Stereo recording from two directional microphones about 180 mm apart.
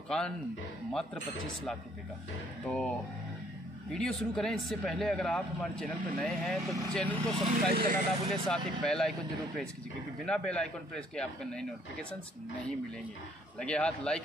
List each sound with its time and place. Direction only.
2.6 s speech: 5° left (ahead or behind)
7.5 s speech: 55° right (ahead or behind)
8.3 s speech: centre (ahead or behind)
10.2 s speech: 5° left (ahead or behind)
13.6 s speech: 5° left (ahead or behind)